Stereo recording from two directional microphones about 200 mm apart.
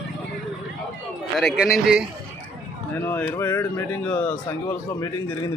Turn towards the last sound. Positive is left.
turn(degrees=15)  # may be behind; listen again after turning